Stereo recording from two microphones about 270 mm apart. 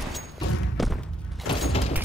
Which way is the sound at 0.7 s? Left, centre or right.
Centre.